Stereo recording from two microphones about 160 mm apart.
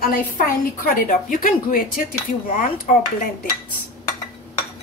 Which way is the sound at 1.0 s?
60° left (ahead or behind).